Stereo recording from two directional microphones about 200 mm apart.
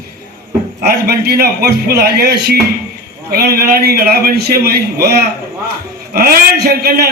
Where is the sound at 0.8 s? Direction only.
50° right (ahead or behind).